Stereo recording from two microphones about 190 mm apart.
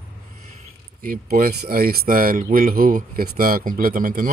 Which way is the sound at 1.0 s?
45° right (ahead or behind).